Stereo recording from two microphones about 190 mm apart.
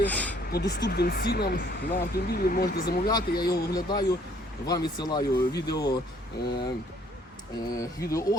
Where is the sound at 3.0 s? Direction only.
20° left (ahead or behind).